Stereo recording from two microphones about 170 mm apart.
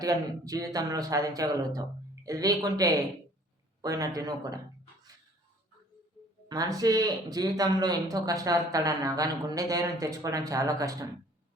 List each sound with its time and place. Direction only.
0.0 s speech: 20° right (ahead or behind)
6.5 s speech: 20° right (ahead or behind)